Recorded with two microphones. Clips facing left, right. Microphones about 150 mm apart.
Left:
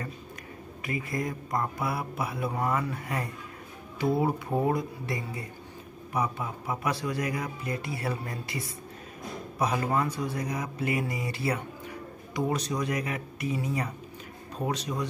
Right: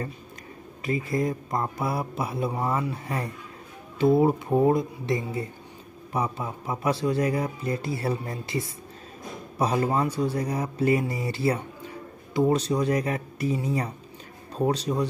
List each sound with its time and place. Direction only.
0.8 s speech: 30° right (ahead or behind)